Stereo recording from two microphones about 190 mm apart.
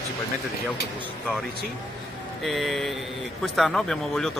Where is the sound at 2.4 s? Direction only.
Centre (ahead or behind).